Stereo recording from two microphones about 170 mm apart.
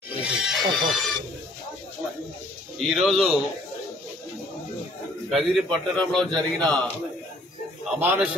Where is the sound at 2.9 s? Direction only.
Centre (ahead or behind).